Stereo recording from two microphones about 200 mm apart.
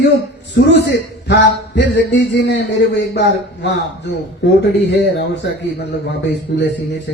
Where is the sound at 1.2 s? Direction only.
60° left (ahead or behind).